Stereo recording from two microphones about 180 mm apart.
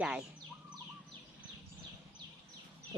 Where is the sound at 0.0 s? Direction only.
5° right (ahead or behind).